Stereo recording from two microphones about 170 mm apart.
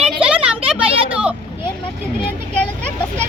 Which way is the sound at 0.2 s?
5° right (ahead or behind).